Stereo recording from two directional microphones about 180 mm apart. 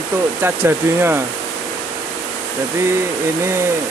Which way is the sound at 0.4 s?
15° right (ahead or behind).